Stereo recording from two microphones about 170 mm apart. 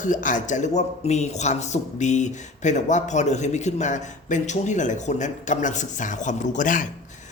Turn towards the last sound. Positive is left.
turn(degrees=50)  # may be behind; listen again after turning